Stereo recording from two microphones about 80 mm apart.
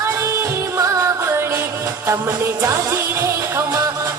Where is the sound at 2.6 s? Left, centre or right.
Right.